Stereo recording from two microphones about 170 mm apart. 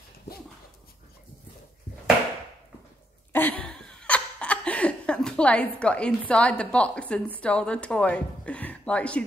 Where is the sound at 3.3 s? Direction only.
10° left (ahead or behind).